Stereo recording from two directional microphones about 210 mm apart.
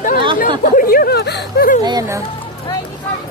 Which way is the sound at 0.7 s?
40° left (ahead or behind).